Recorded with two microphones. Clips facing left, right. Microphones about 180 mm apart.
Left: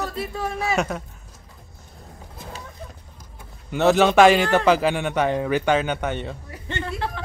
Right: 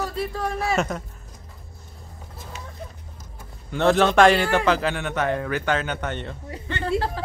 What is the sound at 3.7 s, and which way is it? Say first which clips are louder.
Speech: left 2 dB; 5° left (ahead or behind).